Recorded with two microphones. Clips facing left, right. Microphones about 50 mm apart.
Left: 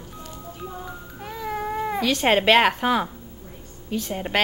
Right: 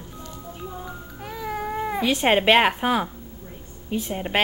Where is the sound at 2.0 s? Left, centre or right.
Centre.